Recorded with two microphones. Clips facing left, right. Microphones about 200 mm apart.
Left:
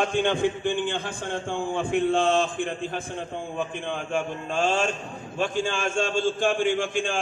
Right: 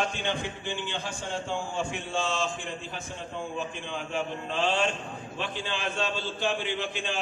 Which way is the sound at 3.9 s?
50° left (ahead or behind).